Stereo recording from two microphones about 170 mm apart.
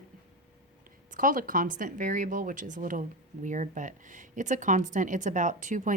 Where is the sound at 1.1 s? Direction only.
50° right (ahead or behind).